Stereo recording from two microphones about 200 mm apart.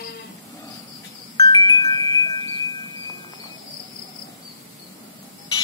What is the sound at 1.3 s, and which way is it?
Wind chime, 20° left (ahead or behind).